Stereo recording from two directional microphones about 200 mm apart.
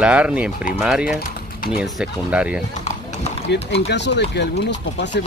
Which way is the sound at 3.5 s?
60° left (ahead or behind).